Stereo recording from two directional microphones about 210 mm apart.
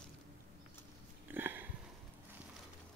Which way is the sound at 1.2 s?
10° right (ahead or behind).